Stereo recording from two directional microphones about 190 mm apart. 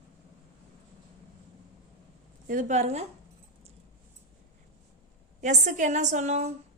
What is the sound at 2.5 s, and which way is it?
Speech, 40° right (ahead or behind).